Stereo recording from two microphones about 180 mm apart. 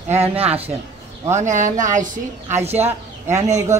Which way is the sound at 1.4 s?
45° right (ahead or behind).